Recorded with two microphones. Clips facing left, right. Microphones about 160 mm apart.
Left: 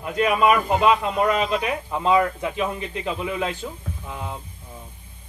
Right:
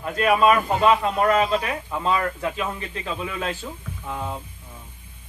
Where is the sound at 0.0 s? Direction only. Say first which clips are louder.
Right 1 dB; 15° left (ahead or behind).